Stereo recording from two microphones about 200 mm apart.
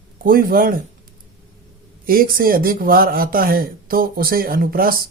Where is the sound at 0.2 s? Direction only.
45° right (ahead or behind).